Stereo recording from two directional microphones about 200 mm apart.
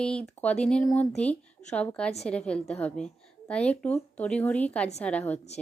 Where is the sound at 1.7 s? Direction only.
5° left (ahead or behind).